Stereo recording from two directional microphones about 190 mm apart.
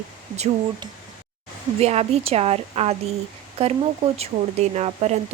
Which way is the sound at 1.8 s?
35° right (ahead or behind).